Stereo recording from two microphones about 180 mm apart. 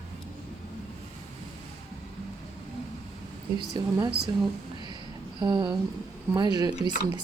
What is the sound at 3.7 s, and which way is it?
Speech, 25° right (ahead or behind).